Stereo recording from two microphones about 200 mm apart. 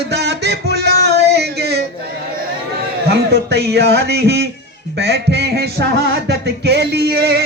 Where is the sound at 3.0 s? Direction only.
55° right (ahead or behind).